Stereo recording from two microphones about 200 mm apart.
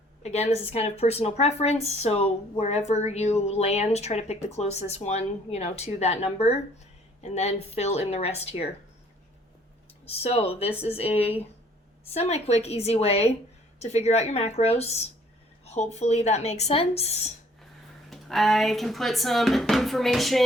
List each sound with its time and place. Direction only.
0.2 s a woman's voice: 35° left (ahead or behind)
10.2 s a woman's voice: 30° left (ahead or behind)
18.1 s speech: centre (ahead or behind)